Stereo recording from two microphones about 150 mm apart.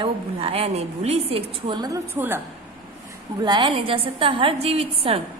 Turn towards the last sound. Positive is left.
turn(degrees=-40)  # may be behind; listen again after turning